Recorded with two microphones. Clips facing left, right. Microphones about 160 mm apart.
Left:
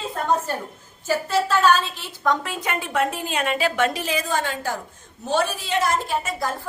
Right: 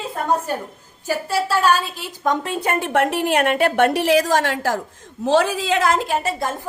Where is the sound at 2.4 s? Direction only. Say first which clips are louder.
Right 6 dB; 30° right (ahead or behind).